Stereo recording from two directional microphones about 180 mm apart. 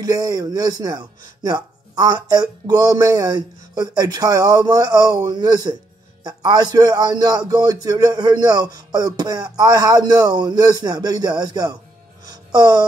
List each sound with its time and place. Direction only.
0.0 s speech: 20° right (ahead or behind)